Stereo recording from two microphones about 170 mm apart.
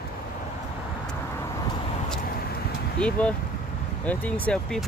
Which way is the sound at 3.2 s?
10° left (ahead or behind).